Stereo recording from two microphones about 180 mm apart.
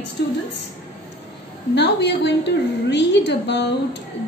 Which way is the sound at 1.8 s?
70° left (ahead or behind).